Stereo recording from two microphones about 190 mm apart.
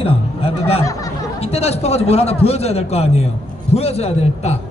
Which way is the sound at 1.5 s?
35° left (ahead or behind).